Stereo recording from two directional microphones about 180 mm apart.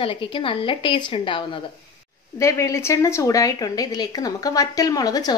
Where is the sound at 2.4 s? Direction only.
15° left (ahead or behind).